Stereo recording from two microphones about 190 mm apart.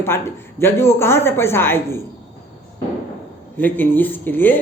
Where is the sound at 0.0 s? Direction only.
10° left (ahead or behind).